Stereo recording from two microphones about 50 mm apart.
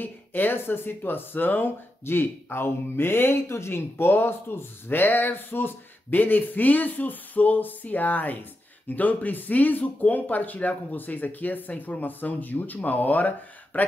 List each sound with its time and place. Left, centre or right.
0.0 s speech: left